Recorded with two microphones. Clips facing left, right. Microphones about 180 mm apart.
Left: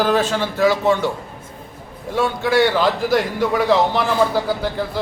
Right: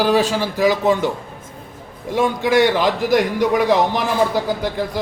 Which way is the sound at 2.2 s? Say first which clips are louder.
Right 1 dB; 15° right (ahead or behind).